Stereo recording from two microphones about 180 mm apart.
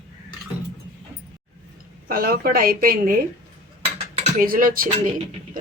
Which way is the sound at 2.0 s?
55° right (ahead or behind).